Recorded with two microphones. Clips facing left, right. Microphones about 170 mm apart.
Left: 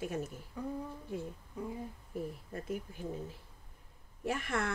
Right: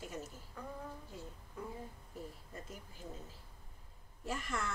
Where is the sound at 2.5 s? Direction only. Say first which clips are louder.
Left 11 dB; 60° left (ahead or behind).